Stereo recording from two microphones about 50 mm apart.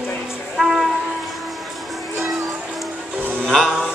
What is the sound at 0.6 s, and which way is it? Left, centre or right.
Music, centre.